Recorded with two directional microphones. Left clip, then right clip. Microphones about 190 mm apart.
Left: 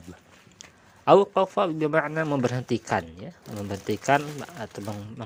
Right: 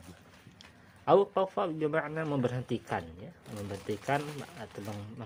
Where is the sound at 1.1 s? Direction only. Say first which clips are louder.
Left 7 dB; 20° left (ahead or behind).